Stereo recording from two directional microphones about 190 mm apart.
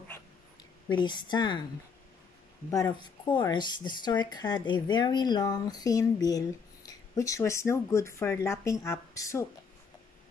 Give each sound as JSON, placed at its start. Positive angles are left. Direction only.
{"t": 0.8, "sound": "speech", "side_deg": 25}
{"t": 2.7, "sound": "speech", "side_deg": 20}